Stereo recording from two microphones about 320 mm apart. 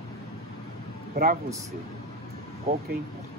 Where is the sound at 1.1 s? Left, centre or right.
Right.